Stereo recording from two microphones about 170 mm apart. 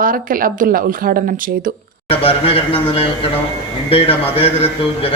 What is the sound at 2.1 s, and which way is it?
A man's voice, 35° left (ahead or behind).